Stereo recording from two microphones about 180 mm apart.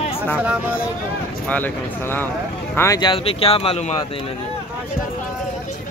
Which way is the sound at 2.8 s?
20° left (ahead or behind).